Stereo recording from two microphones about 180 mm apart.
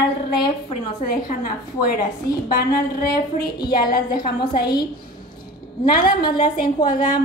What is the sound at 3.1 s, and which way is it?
A woman's voice, 25° left (ahead or behind).